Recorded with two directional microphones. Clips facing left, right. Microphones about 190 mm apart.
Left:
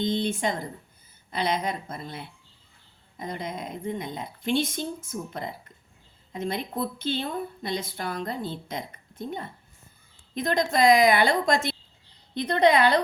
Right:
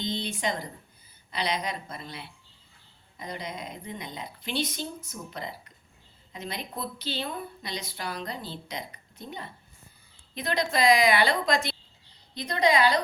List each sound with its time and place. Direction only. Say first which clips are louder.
0.0 s a woman's voice: left 5 dB; 50° left (ahead or behind)